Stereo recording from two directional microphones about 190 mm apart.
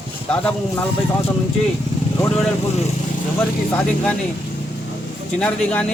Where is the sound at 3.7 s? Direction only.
5° left (ahead or behind).